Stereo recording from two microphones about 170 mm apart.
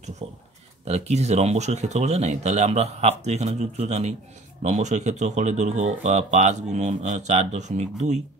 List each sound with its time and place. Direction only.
0.2 s speech: 35° right (ahead or behind)